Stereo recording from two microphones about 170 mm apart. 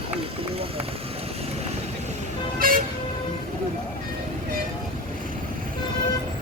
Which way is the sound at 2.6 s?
55° right (ahead or behind).